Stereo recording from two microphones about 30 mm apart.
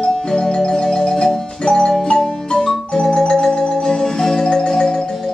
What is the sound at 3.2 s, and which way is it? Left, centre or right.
Music, left.